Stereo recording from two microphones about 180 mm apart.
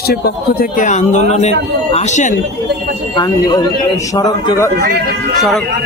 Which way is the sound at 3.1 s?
20° left (ahead or behind).